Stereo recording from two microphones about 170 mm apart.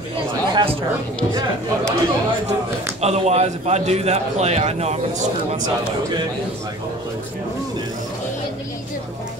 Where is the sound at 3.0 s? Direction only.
40° right (ahead or behind).